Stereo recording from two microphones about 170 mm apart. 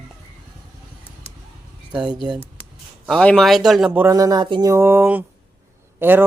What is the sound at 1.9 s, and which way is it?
Speech, 5° right (ahead or behind).